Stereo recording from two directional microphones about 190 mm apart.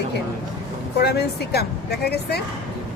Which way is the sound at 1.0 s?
60° left (ahead or behind).